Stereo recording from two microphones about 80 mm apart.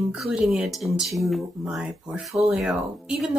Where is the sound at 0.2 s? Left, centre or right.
Centre.